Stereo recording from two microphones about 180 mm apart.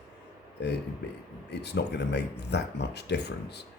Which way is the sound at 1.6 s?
70° left (ahead or behind).